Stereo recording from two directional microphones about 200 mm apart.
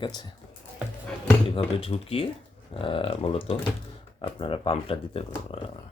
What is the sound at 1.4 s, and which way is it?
Speech, 25° left (ahead or behind).